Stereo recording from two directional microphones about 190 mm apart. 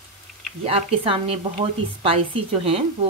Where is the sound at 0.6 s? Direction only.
30° right (ahead or behind).